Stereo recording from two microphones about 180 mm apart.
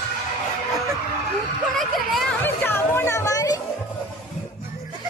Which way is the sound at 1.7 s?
Centre (ahead or behind).